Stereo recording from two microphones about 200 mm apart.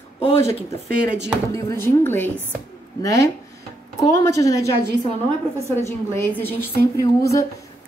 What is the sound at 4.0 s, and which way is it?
Speech, 15° left (ahead or behind).